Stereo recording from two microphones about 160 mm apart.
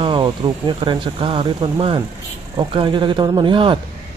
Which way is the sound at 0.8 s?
35° right (ahead or behind).